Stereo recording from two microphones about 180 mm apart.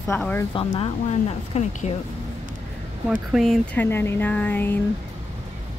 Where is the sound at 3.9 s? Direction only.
15° left (ahead or behind).